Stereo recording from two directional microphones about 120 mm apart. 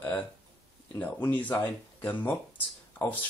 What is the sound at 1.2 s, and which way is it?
Speech, 15° left (ahead or behind).